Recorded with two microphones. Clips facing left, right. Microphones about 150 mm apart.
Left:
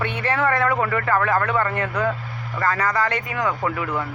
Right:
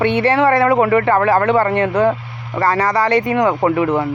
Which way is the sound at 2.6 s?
85° right.